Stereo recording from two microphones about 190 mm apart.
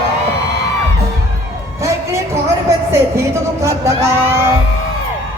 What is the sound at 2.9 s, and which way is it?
Speech, 15° right (ahead or behind).